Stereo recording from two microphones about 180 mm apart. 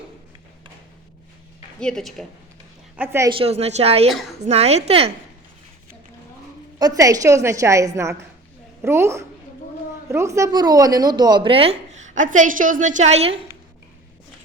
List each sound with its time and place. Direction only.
1.8 s a woman's voice: 5° left (ahead or behind)
2.9 s a woman's voice: 10° right (ahead or behind)
3.2 s a woman's voice: 30° right (ahead or behind)
6.7 s a woman's voice: 20° right (ahead or behind)